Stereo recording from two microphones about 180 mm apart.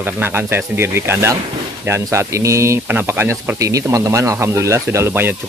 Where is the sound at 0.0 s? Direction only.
10° right (ahead or behind).